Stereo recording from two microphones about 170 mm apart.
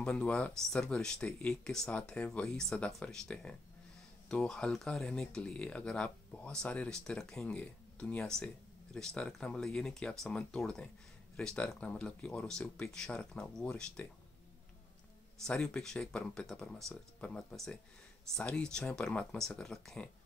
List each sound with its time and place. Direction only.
0.0 s speech: 5° left (ahead or behind)
15.4 s speech: 5° left (ahead or behind)